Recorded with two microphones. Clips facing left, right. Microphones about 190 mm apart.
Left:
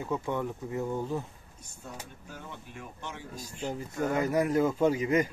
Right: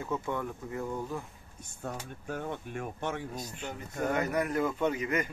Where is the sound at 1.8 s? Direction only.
55° right (ahead or behind).